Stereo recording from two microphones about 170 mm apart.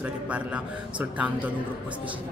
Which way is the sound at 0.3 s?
5° right (ahead or behind).